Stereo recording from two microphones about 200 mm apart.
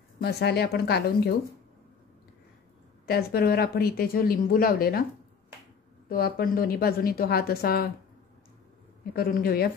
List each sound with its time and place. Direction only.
0.2 s speech: 55° left (ahead or behind)
3.1 s speech: 50° left (ahead or behind)
6.0 s speech: 50° left (ahead or behind)
9.1 s speech: 50° left (ahead or behind)